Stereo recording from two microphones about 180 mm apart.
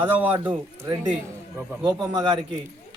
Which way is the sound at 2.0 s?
25° right (ahead or behind).